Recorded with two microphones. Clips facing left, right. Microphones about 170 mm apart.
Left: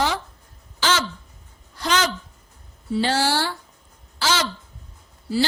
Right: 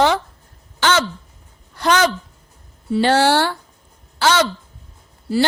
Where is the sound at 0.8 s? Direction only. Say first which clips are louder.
Right 5 dB; 60° right (ahead or behind).